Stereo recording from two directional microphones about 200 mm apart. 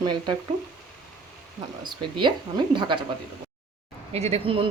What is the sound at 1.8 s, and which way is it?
Speech, 25° right (ahead or behind).